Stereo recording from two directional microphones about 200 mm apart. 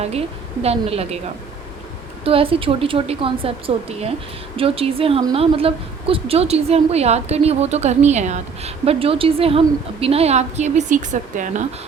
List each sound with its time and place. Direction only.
0.0 s a woman's voice: 30° right (ahead or behind)
2.2 s a woman's voice: 30° right (ahead or behind)